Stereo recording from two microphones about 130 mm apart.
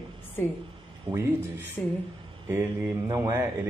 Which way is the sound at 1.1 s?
15° right (ahead or behind).